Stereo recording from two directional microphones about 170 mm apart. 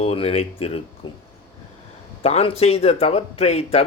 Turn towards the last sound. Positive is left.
turn(degrees=40)  # may be behind; listen again after turning